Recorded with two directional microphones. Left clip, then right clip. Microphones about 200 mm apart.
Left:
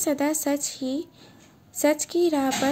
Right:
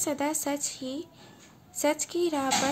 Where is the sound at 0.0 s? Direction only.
15° left (ahead or behind).